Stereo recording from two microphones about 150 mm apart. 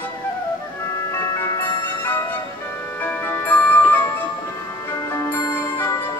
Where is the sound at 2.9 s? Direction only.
10° left (ahead or behind).